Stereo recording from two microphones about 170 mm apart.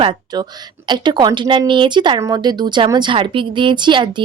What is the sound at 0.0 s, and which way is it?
A woman's voice, 25° right (ahead or behind).